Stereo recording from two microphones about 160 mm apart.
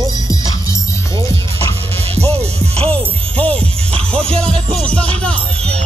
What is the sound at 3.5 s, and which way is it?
Music, 5° left (ahead or behind).